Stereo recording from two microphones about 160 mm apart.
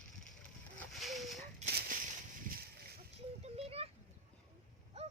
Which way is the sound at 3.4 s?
40° right (ahead or behind).